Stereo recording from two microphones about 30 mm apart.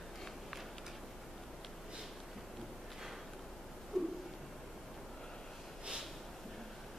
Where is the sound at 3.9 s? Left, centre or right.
Centre.